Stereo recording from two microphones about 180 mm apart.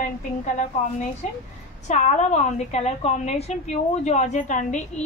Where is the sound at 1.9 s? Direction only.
40° left (ahead or behind).